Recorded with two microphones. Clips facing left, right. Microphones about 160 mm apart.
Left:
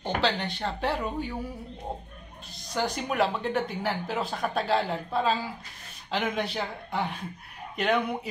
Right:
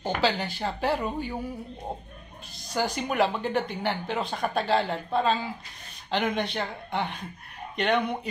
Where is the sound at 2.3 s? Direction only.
Centre (ahead or behind).